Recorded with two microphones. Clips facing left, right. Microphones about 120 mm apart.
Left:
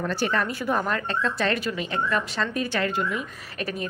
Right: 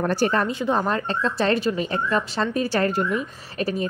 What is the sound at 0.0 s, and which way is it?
Speech, 40° right (ahead or behind).